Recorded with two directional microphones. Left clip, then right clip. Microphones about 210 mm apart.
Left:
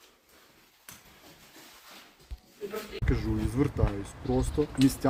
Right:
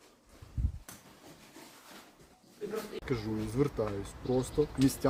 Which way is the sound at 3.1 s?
10° left (ahead or behind).